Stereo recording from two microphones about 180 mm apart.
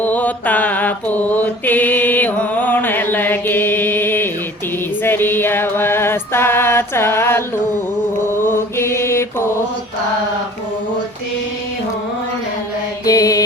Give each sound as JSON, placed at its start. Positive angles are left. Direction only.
{"t": 0.0, "sound": "mantra", "side_deg": 10}
{"t": 5.0, "sound": "music", "side_deg": 10}
{"t": 8.3, "sound": "mantra", "side_deg": 15}
{"t": 13.1, "sound": "mantra", "side_deg": 20}